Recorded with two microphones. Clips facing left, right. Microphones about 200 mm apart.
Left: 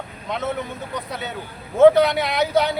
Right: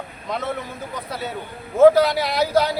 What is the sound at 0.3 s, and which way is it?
Speech, centre (ahead or behind).